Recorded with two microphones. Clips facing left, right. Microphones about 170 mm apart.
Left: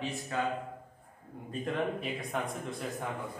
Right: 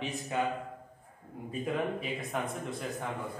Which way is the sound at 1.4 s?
5° right (ahead or behind).